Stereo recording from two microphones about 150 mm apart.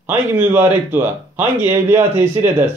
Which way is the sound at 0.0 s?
15° right (ahead or behind).